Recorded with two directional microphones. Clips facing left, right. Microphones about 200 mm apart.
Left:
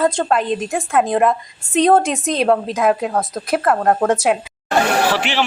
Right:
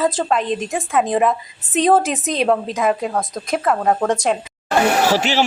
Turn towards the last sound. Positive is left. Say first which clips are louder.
# right 2 dB
turn(degrees=-40)  # may be behind; listen again after turning